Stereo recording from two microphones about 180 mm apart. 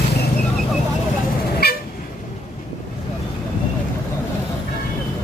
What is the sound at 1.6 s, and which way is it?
Vehicle, 65° left (ahead or behind).